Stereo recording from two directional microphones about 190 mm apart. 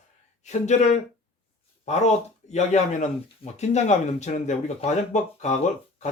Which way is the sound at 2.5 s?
40° left (ahead or behind).